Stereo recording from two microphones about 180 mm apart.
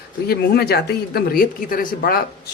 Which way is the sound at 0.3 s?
60° left (ahead or behind).